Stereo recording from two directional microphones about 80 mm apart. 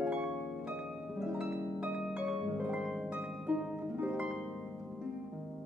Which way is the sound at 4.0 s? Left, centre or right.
Centre.